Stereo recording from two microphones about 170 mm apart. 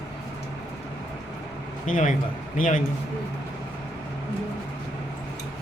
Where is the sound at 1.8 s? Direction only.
50° left (ahead or behind).